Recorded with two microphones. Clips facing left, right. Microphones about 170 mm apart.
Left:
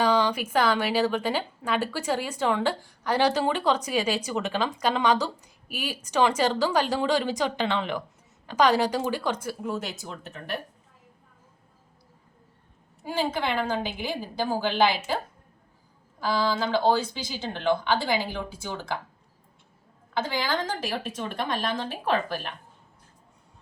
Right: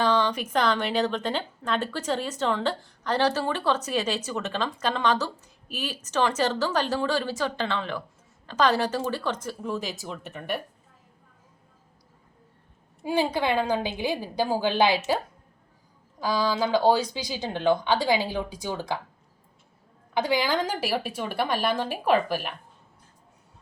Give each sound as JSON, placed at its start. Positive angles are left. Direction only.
{"t": 0.0, "sound": "speech", "side_deg": 10}
{"t": 13.1, "sound": "speech", "side_deg": -15}
{"t": 16.2, "sound": "speech", "side_deg": -15}
{"t": 20.1, "sound": "speech", "side_deg": -15}